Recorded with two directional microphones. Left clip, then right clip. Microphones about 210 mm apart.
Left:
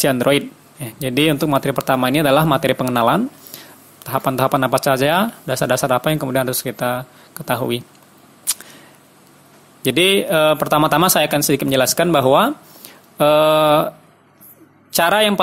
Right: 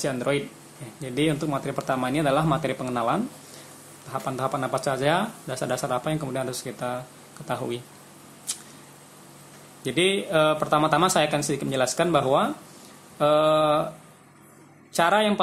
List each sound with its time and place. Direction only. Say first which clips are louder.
0.0 s speech: left 10 dB; 40° left (ahead or behind)
9.8 s speech: left 9 dB; 40° left (ahead or behind)
14.9 s a man's voice: left 6 dB; 40° left (ahead or behind)